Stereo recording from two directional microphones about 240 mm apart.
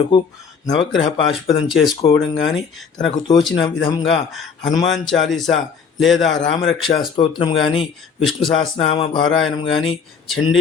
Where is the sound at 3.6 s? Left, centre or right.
Centre.